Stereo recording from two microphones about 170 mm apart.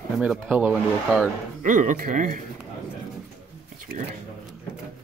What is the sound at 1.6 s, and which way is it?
Speech, 50° right (ahead or behind).